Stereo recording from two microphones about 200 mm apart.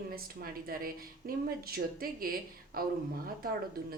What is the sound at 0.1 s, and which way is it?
A woman's voice, 45° right (ahead or behind).